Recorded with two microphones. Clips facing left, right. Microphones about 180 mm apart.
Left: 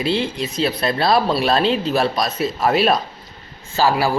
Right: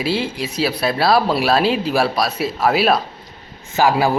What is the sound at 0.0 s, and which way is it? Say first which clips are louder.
Speech: even; 5° right (ahead or behind).